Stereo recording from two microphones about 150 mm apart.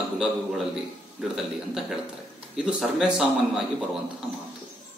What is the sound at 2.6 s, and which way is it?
A man's voice, 5° right (ahead or behind).